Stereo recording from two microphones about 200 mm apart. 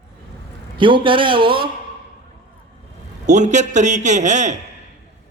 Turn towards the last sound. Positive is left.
turn(degrees=-35)  # may be behind; listen again after turning